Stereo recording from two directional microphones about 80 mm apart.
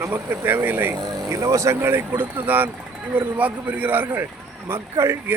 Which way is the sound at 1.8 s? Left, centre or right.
Right.